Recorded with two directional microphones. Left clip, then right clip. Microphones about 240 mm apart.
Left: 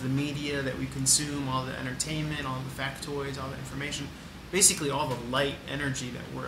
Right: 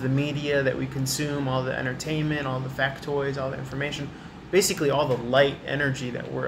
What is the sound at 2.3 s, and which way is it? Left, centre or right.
Speech, centre.